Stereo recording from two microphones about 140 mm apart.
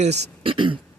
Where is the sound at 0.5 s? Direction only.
35° right (ahead or behind).